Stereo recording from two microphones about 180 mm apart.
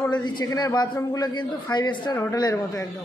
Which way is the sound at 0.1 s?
25° left (ahead or behind).